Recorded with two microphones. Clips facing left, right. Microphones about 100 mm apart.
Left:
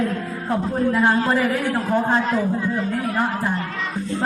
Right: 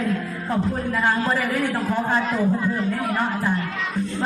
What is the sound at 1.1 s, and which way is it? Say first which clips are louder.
A man's voice: left 3 dB; 35° left (ahead or behind).